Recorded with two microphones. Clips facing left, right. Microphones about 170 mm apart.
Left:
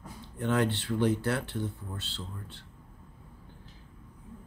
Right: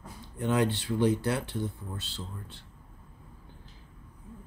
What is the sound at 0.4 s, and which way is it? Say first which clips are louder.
Speech: right 1 dB; 15° right (ahead or behind).